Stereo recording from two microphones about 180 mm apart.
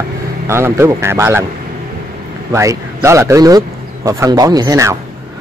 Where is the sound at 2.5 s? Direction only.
15° right (ahead or behind).